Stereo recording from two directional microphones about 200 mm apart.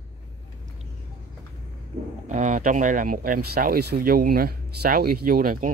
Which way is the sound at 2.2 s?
40° right (ahead or behind).